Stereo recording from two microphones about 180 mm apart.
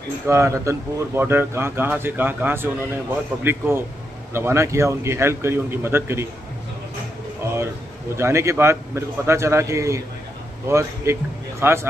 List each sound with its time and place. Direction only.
0.3 s speech: 15° right (ahead or behind)
8.2 s speech: 15° right (ahead or behind)